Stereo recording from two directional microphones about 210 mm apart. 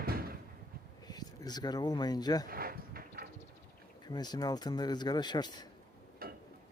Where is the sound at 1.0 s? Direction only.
20° left (ahead or behind).